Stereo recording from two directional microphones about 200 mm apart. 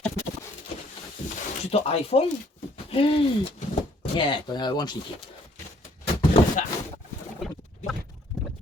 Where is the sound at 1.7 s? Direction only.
30° left (ahead or behind).